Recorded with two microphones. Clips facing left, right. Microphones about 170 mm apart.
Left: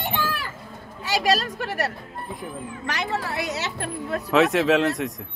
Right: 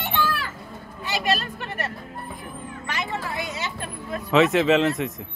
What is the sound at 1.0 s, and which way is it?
Speech, 90° left.